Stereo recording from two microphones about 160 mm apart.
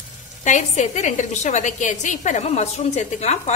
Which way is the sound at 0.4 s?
50° left (ahead or behind).